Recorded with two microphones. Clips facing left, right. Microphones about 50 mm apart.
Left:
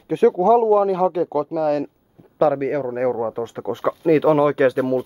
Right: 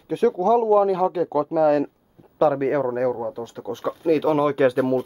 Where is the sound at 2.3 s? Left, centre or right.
Centre.